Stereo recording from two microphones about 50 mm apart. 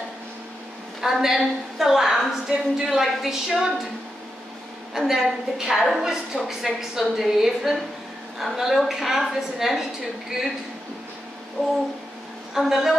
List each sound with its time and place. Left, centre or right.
1.0 s a woman's voice: centre
4.9 s a woman's voice: centre
12.5 s a woman's voice: centre